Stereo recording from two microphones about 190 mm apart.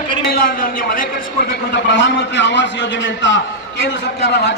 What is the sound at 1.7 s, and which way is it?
A man's voice, 70° left (ahead or behind).